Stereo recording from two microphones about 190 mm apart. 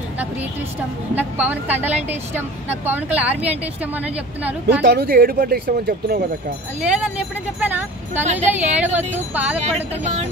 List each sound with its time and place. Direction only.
1.1 s a woman's voice: 10° right (ahead or behind)
4.6 s speech: 60° right (ahead or behind)
6.8 s a woman's voice: 5° right (ahead or behind)
8.3 s speech: 35° right (ahead or behind)
8.7 s a woman's voice: 10° right (ahead or behind)
9.6 s speech: 35° right (ahead or behind)